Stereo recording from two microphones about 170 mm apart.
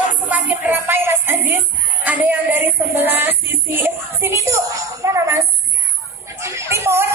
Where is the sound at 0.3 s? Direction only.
10° right (ahead or behind).